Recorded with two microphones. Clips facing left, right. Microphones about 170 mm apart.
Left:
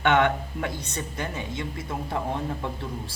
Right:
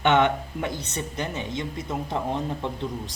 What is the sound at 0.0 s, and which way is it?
Speech, 20° right (ahead or behind).